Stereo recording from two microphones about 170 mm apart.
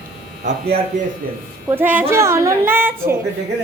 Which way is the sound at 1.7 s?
10° right (ahead or behind).